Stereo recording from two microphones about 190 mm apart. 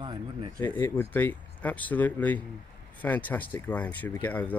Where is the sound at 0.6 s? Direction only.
10° left (ahead or behind).